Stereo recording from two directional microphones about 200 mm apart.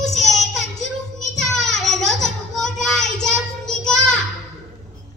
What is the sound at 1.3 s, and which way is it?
Child singing, centre (ahead or behind).